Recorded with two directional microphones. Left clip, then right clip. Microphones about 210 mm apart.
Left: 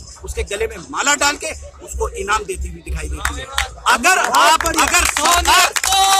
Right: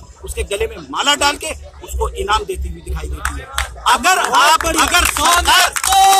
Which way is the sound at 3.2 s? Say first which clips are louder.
Left 1 dB; 50° left (ahead or behind).